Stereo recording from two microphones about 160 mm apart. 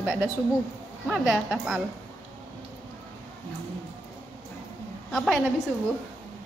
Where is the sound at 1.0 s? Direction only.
5° right (ahead or behind).